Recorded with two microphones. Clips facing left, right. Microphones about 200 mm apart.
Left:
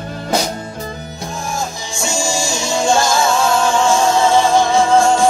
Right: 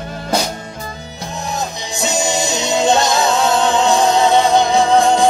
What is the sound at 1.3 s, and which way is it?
Music, 20° right (ahead or behind).